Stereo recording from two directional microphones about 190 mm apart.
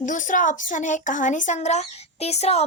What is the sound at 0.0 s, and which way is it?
A woman's voice, 40° left (ahead or behind).